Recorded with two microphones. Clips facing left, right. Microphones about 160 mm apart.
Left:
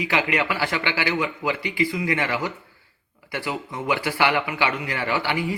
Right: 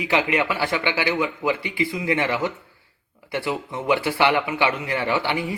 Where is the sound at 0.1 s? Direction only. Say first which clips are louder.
Right 4 dB; 20° right (ahead or behind).